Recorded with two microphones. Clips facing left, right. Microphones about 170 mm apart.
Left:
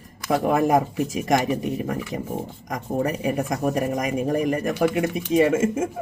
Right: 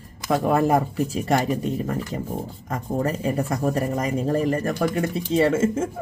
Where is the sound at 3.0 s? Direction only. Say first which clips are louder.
Even; 15° left (ahead or behind).